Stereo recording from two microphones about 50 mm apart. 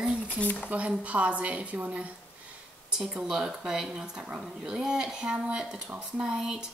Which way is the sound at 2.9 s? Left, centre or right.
Centre.